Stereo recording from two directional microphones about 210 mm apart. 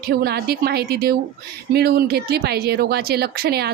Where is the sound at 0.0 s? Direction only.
50° right (ahead or behind).